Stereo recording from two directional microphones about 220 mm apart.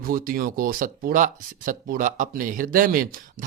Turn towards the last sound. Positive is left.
turn(degrees=-40)  # may be behind; listen again after turning